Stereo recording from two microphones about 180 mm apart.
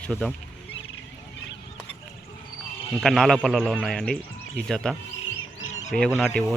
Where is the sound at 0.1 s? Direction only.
Centre (ahead or behind).